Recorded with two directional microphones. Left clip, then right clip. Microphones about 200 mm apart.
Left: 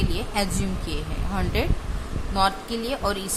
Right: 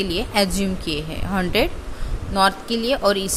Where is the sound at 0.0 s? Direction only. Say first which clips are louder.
Right 6 dB; 25° right (ahead or behind).